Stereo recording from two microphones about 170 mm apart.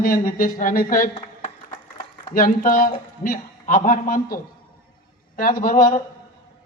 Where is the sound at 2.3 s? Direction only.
55° left (ahead or behind).